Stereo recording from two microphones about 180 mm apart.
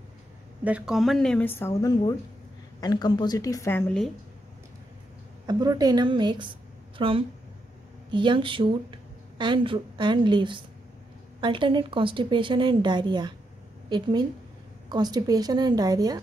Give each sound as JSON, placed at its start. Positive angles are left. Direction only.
{"t": 0.7, "sound": "a woman's voice", "side_deg": -5}
{"t": 5.5, "sound": "a woman's voice", "side_deg": -20}